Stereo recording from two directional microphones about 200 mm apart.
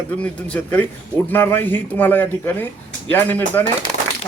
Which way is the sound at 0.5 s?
10° left (ahead or behind).